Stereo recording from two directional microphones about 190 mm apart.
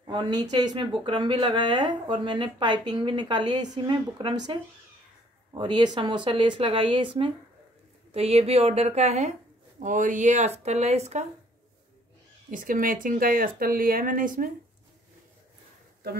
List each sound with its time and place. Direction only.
0.0 s speech: 20° right (ahead or behind)
12.4 s speech: 45° right (ahead or behind)